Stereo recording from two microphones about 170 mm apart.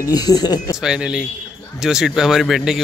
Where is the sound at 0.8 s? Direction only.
5° right (ahead or behind).